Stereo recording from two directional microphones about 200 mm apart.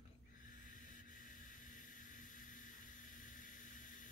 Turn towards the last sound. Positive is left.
turn(degrees=40)  # may be behind; listen again after turning